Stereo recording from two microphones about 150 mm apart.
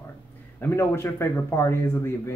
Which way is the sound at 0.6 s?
15° left (ahead or behind).